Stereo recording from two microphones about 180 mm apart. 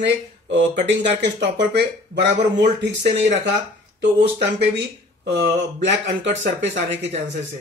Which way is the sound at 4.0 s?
75° right (ahead or behind).